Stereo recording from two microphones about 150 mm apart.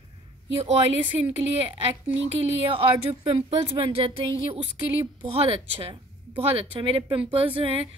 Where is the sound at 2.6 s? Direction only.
35° right (ahead or behind).